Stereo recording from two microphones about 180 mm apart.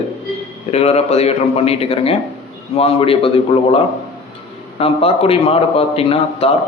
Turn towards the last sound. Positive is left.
turn(degrees=30)  # may be behind; listen again after turning